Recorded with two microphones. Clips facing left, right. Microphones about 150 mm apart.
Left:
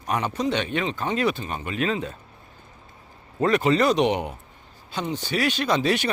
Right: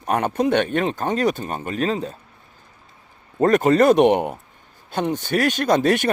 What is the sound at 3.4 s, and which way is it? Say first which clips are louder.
Speech: right 5 dB; 45° right (ahead or behind).